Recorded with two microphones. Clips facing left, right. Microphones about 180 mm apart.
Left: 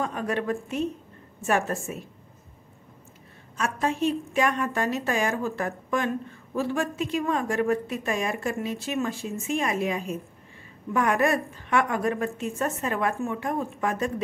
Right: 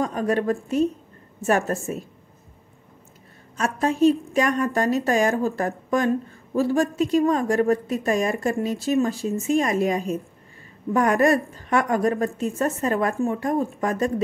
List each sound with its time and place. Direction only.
0.0 s a woman's voice: 40° right (ahead or behind)
3.5 s a woman's voice: 40° right (ahead or behind)